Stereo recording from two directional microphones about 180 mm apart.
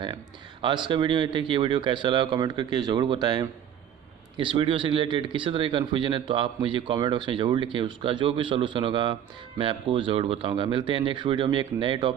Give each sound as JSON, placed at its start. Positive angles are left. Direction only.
{"t": 0.0, "sound": "speech", "side_deg": -25}